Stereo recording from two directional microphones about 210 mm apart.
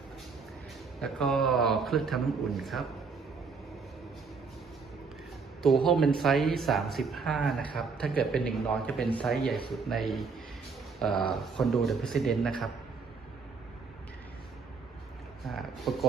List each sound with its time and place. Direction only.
1.0 s speech: centre (ahead or behind)
5.6 s speech: centre (ahead or behind)
15.4 s a sound: centre (ahead or behind)